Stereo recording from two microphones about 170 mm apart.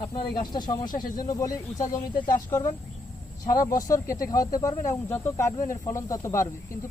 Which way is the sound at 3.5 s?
20° left (ahead or behind).